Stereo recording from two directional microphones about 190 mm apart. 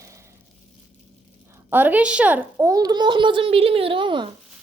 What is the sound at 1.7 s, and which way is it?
A child's voice, 10° right (ahead or behind).